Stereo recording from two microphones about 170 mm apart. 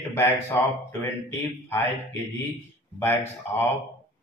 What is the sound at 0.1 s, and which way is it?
A man's voice, 10° left (ahead or behind).